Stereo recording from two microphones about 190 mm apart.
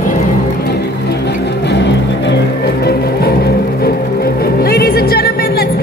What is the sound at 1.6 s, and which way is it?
Music, 65° left (ahead or behind).